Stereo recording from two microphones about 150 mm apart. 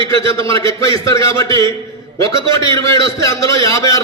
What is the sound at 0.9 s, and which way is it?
A man's voice, 20° left (ahead or behind).